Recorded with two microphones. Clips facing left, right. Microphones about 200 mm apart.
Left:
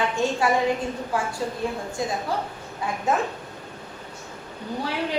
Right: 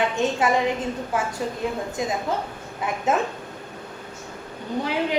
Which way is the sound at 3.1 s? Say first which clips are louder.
Right 1 dB; 20° right (ahead or behind).